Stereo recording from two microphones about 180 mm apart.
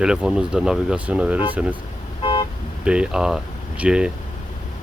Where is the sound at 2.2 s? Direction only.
25° left (ahead or behind).